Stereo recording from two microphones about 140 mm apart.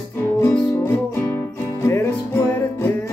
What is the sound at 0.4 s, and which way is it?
Music, 15° left (ahead or behind).